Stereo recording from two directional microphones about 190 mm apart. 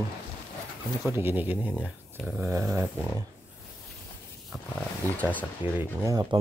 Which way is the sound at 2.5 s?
15° right (ahead or behind).